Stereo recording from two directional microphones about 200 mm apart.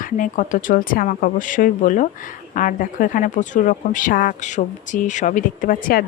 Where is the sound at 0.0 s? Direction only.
40° left (ahead or behind).